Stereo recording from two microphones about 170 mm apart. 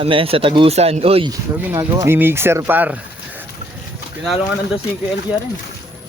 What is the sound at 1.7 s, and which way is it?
Speech, 15° right (ahead or behind).